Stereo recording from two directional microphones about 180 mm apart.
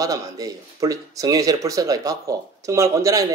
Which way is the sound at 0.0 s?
20° right (ahead or behind).